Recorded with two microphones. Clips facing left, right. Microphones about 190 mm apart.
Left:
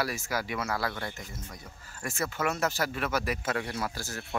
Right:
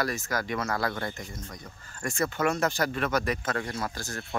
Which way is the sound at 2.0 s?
5° left (ahead or behind).